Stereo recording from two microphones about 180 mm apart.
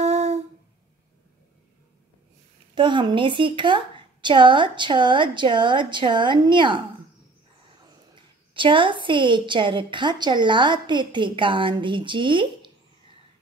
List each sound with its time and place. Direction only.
0.0 s a sound: 35° right (ahead or behind)
2.7 s a woman's voice: 25° right (ahead or behind)
8.1 s a woman's voice: 25° right (ahead or behind)